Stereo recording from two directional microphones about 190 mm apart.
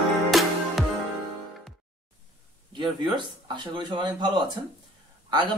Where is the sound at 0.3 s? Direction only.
Centre (ahead or behind).